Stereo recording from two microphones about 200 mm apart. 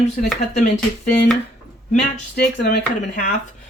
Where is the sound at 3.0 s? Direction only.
40° left (ahead or behind).